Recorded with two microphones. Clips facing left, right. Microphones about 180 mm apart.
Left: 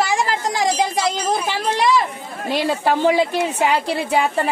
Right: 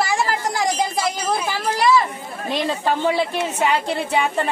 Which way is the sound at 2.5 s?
5° left (ahead or behind).